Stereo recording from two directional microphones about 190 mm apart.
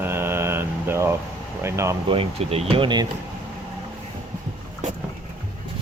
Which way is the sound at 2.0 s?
30° right (ahead or behind).